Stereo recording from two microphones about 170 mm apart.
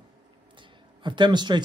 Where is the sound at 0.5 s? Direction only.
25° right (ahead or behind).